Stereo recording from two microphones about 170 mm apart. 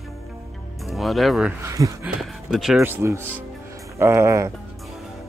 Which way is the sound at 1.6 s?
20° right (ahead or behind).